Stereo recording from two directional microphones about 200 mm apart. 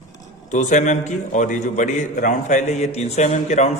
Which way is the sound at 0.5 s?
35° left (ahead or behind).